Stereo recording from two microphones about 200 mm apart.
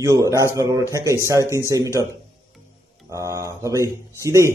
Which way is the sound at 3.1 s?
15° right (ahead or behind).